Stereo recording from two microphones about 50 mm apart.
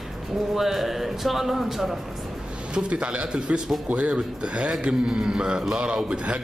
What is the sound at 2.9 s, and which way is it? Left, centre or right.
A man's voice, centre.